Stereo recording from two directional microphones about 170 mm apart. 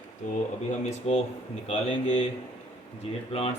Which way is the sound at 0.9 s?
40° left (ahead or behind).